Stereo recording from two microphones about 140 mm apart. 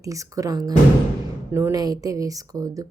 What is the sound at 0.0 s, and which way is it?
Speech, 25° right (ahead or behind).